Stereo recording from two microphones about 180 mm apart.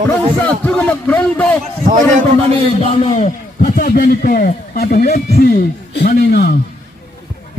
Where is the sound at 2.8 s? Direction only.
35° left (ahead or behind); by 6.5 s 60° left (ahead or behind).